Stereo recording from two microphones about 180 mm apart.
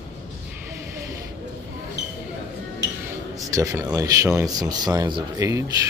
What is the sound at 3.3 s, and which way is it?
Speech, 15° right (ahead or behind).